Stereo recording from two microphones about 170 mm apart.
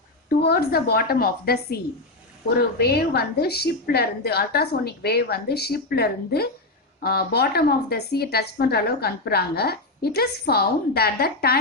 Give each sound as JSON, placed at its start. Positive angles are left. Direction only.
{"t": 0.3, "sound": "a woman's voice", "side_deg": 65}
{"t": 2.6, "sound": "a woman's voice", "side_deg": 70}